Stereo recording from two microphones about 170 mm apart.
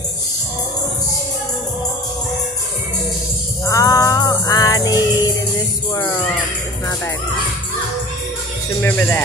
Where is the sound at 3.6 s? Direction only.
20° left (ahead or behind).